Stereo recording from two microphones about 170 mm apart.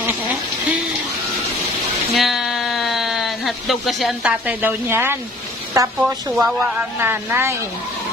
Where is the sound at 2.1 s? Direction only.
Centre (ahead or behind).